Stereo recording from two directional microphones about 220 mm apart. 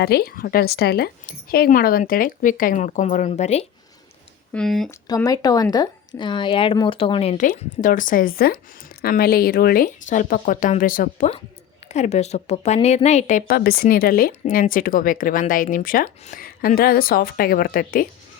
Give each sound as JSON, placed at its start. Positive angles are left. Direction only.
{"t": 0.0, "sound": "a woman's voice", "side_deg": 45}
{"t": 4.5, "sound": "speech", "side_deg": 0}
{"t": 4.9, "sound": "a woman's voice", "side_deg": 15}